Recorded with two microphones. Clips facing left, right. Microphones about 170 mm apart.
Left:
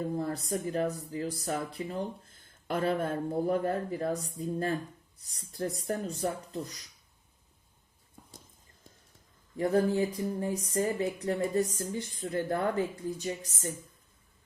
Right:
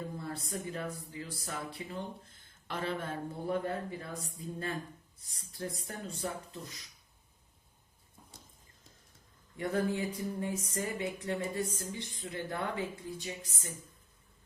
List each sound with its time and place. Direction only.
0.2 s speech: 40° left (ahead or behind)
2.6 s speech: 50° left (ahead or behind)
9.6 s speech: 35° left (ahead or behind)